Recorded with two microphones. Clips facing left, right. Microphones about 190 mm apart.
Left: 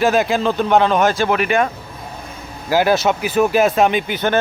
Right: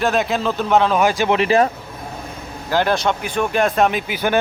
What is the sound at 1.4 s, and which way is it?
Speech, 30° right (ahead or behind).